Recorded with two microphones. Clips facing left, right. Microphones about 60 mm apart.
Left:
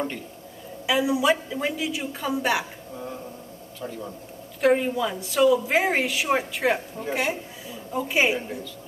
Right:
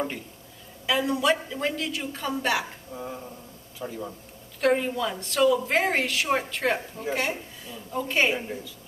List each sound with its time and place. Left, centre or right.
0.8 s a woman's voice: centre